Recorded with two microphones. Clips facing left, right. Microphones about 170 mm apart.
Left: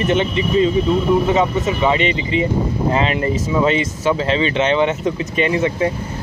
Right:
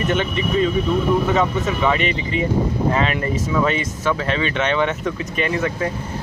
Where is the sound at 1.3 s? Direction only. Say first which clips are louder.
Left 2 dB; 20° left (ahead or behind).